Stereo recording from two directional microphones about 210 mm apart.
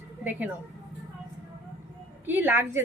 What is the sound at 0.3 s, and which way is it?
Speech, 10° right (ahead or behind).